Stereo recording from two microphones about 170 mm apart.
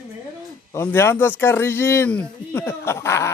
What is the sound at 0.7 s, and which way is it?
A man's voice, 15° left (ahead or behind).